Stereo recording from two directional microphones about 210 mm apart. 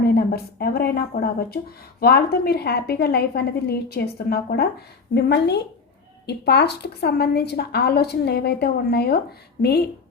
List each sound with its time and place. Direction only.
0.0 s a woman's voice: 50° left (ahead or behind)